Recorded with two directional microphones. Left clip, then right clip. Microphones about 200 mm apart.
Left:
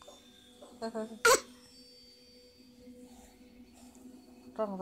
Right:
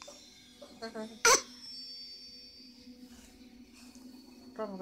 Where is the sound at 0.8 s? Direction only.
30° left (ahead or behind).